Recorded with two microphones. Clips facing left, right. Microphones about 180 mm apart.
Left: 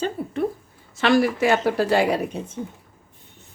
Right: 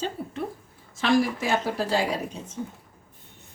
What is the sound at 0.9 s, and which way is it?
A woman's voice, 70° left (ahead or behind).